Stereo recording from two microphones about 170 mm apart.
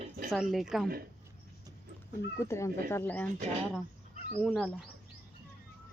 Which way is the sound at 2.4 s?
15° left (ahead or behind).